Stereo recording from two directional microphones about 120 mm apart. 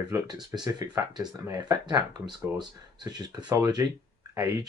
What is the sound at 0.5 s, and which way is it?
Speech, 35° right (ahead or behind).